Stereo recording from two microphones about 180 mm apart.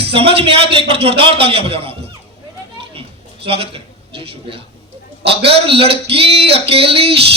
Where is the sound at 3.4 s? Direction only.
30° right (ahead or behind).